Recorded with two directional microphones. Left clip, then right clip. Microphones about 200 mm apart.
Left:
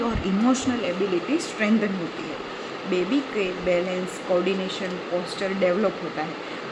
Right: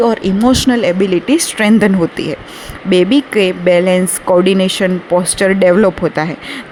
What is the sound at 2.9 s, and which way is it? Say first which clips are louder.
Speech: right 14 dB; 50° right (ahead or behind).